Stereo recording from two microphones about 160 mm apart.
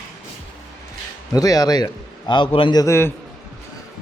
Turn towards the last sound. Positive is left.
turn(degrees=15)  # may be behind; listen again after turning